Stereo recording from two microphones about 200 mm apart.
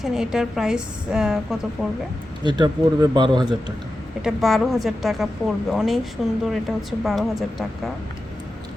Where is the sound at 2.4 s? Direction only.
20° right (ahead or behind).